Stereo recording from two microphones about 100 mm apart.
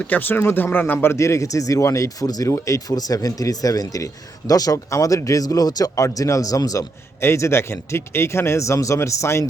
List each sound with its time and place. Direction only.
0.1 s speech: 20° left (ahead or behind)